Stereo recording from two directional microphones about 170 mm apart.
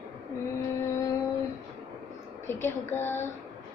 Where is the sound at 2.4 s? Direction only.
15° left (ahead or behind).